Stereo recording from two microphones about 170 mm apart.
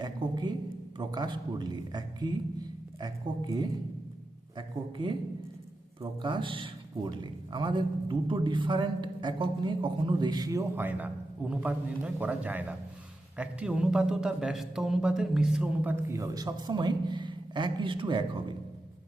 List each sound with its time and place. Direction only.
0.0 s a man's voice: 25° right (ahead or behind)